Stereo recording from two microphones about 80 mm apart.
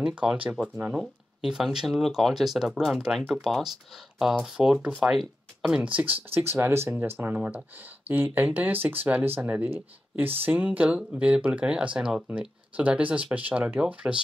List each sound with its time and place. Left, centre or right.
0.0 s speech: centre
0.9 s speech: centre
5.8 s speech: centre